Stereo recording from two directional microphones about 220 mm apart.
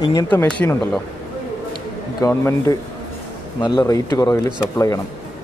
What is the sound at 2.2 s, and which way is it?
Speech, 15° left (ahead or behind).